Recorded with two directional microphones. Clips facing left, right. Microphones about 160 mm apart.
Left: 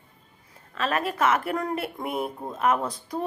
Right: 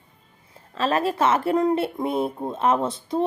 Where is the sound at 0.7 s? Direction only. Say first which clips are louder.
Right 5 dB; 30° right (ahead or behind).